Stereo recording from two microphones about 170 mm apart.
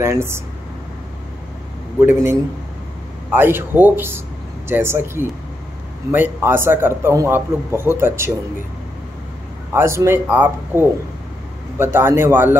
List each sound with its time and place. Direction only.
0.0 s a man's voice: 15° right (ahead or behind)
2.0 s a man's voice: 15° right (ahead or behind)
9.7 s a man's voice: 15° right (ahead or behind)